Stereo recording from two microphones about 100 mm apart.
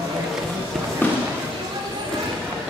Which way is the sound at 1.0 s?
15° left (ahead or behind).